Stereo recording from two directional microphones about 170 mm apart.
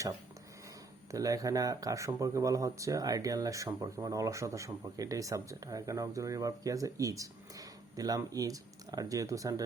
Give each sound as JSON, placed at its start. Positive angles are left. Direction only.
{"t": 1.1, "sound": "speech", "side_deg": -20}